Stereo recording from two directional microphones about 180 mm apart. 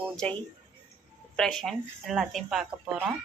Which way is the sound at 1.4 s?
5° left (ahead or behind).